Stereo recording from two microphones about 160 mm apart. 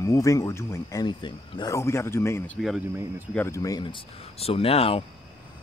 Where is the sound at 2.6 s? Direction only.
Centre (ahead or behind).